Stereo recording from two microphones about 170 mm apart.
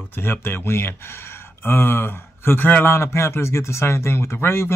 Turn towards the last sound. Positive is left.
turn(degrees=15)  # may be behind; listen again after turning